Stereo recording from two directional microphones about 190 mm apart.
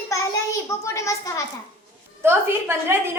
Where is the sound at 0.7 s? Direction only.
15° left (ahead or behind).